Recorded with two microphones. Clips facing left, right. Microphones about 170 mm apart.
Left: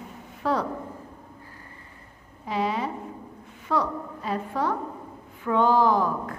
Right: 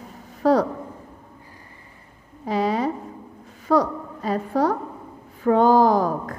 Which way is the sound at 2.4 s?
40° right (ahead or behind).